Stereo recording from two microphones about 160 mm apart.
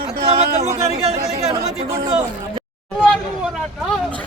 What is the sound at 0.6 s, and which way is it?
Speech, 45° right (ahead or behind).